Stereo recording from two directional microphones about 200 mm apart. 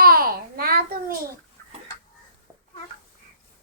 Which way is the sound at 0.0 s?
50° right (ahead or behind).